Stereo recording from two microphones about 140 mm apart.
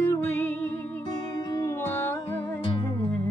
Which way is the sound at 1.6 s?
15° left (ahead or behind).